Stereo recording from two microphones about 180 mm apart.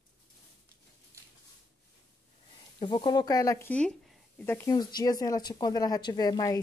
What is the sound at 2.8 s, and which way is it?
Speech, 25° left (ahead or behind).